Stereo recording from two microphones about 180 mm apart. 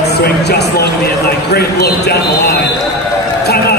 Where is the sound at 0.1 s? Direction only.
65° left (ahead or behind).